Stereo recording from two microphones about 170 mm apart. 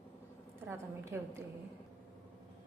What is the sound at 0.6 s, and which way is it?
Speech, 15° right (ahead or behind).